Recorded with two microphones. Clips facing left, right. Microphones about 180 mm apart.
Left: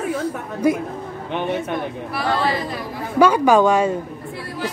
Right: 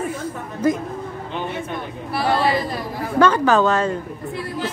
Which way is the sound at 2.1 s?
30° right (ahead or behind).